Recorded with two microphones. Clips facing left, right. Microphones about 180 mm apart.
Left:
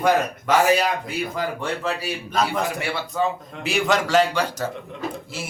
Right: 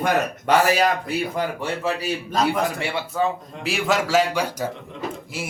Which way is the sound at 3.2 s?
Centre (ahead or behind).